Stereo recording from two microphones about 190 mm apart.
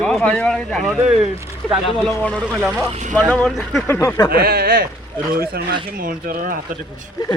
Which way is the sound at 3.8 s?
15° left (ahead or behind).